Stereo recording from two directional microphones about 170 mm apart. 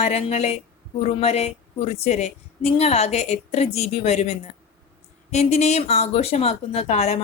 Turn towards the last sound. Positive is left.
turn(degrees=40)  # may be behind; listen again after turning